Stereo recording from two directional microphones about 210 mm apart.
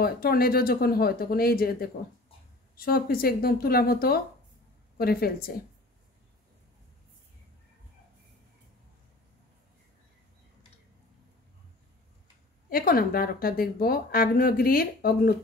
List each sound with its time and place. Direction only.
0.0 s a woman's voice: 45° left (ahead or behind)
12.6 s a woman's voice: 45° left (ahead or behind)